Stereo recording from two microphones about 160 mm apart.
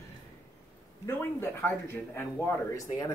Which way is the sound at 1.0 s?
15° left (ahead or behind).